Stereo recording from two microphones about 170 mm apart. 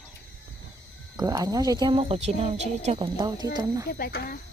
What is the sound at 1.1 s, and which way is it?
Speech, 20° right (ahead or behind).